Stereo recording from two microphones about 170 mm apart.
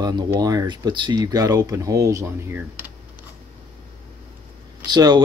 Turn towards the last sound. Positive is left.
turn(degrees=-25)  # may be behind; listen again after turning